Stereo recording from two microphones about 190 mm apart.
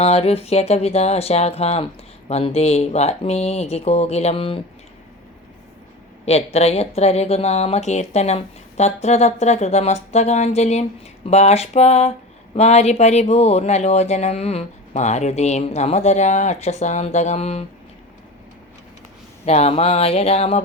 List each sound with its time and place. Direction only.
0.0 s speech: 30° left (ahead or behind)
6.2 s speech: 35° left (ahead or behind)
19.5 s speech: 35° left (ahead or behind)